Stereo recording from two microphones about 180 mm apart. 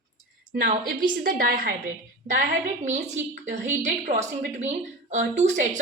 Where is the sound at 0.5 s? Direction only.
50° right (ahead or behind).